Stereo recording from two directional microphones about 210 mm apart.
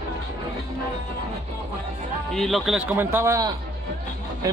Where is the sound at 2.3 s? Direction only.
Centre (ahead or behind).